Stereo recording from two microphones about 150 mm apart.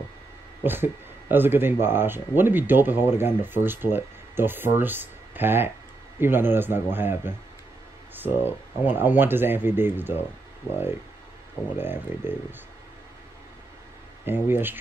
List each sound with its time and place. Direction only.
0.7 s speech: 15° right (ahead or behind)
11.7 s speech: 15° right (ahead or behind)
14.2 s speech: 15° right (ahead or behind)